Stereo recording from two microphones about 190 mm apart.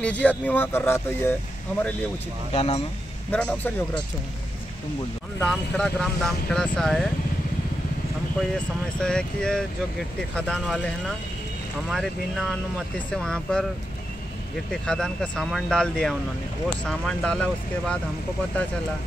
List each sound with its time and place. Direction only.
0.0 s speech: 5° left (ahead or behind)
2.5 s speech: 30° left (ahead or behind)
3.3 s speech: 10° left (ahead or behind)
5.4 s speech: 5° left (ahead or behind)
9.0 s speech: 5° left (ahead or behind)
14.7 s speech: 5° left (ahead or behind)